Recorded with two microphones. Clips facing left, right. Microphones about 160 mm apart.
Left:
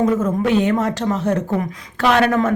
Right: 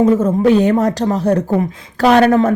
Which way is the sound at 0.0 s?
30° right (ahead or behind).